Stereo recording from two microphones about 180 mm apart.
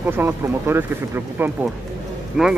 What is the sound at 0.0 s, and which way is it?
Speech, 10° right (ahead or behind).